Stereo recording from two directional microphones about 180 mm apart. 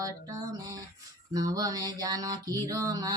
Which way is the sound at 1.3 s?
20° right (ahead or behind).